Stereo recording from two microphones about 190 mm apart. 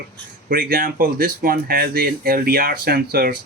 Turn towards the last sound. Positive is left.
turn(degrees=-50)  # may be behind; listen again after turning